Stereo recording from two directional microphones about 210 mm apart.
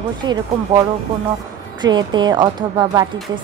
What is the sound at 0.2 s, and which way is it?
Speech, 20° right (ahead or behind).